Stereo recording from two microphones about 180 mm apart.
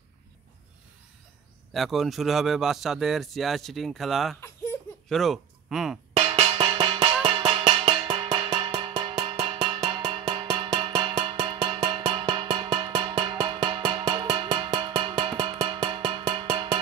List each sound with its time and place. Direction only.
1.7 s a man's voice: centre (ahead or behind)
6.1 s music: 35° right (ahead or behind)